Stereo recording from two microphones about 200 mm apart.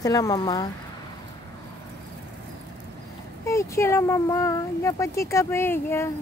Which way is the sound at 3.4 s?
15° left (ahead or behind).